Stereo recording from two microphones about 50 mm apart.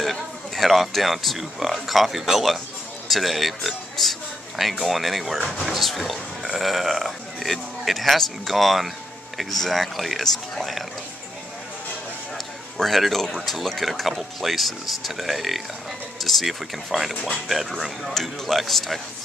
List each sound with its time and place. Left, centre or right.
0.0 s speech: centre
12.7 s speech: centre
17.1 s speech: centre
17.5 s speech: centre